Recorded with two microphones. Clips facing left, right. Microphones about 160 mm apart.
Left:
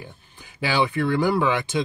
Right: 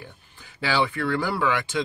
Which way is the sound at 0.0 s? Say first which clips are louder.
Left 2 dB; 15° left (ahead or behind).